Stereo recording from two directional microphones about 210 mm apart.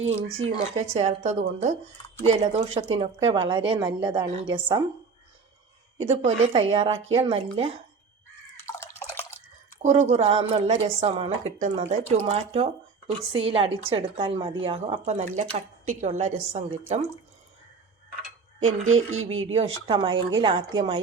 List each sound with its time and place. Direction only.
0.0 s a woman's voice: 30° right (ahead or behind)
6.1 s a woman's voice: 30° right (ahead or behind)
8.6 s drip: 15° left (ahead or behind)
10.1 s a woman's voice: 30° right (ahead or behind)
18.6 s speech: 75° right (ahead or behind)
19.5 s a woman's voice: 25° right (ahead or behind)